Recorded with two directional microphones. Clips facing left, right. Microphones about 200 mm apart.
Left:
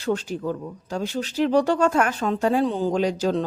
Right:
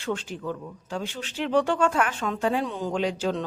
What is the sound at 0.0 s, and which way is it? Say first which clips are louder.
A woman's voice: left 5 dB; 40° left (ahead or behind).